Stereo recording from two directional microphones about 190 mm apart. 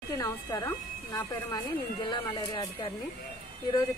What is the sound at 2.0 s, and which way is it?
Speech, 25° left (ahead or behind).